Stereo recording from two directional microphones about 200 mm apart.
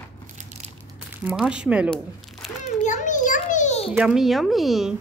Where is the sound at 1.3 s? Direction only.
5° right (ahead or behind).